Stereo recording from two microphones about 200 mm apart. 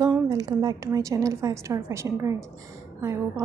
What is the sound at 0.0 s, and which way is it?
A woman's voice, 20° right (ahead or behind).